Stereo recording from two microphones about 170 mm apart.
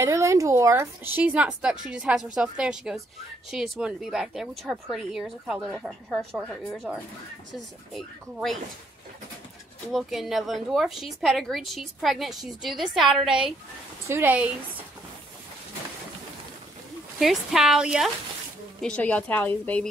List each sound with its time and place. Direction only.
0.0 s a woman's voice: 20° right (ahead or behind); by 8.5 s centre (ahead or behind)
9.9 s a woman's voice: centre (ahead or behind)
14.0 s a woman's voice: 15° right (ahead or behind)
17.2 s a woman's voice: centre (ahead or behind)
18.8 s a woman's voice: 5° left (ahead or behind)